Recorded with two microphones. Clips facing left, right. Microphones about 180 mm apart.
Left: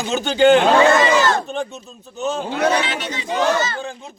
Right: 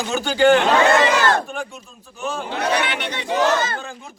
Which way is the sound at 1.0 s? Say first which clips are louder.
Left 1 dB; 60° right (ahead or behind).